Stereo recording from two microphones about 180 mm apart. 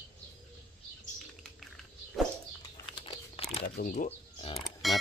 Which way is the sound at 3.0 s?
30° left (ahead or behind).